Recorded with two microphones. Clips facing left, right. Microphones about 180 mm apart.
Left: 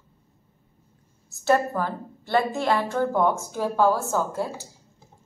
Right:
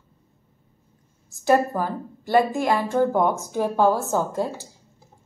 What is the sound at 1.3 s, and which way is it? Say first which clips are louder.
A woman's voice: right 2 dB; 15° right (ahead or behind).